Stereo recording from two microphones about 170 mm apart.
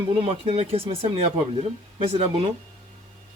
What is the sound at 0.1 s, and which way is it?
Speech, 35° right (ahead or behind).